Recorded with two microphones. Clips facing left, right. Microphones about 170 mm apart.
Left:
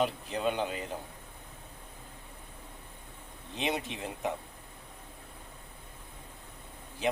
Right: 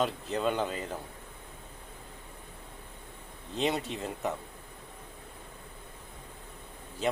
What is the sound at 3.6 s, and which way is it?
Speech, 15° left (ahead or behind).